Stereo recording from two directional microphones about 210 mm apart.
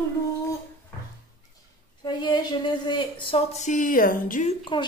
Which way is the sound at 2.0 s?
20° left (ahead or behind).